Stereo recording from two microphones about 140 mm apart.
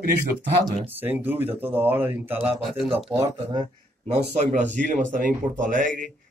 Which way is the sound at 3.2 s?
30° right (ahead or behind).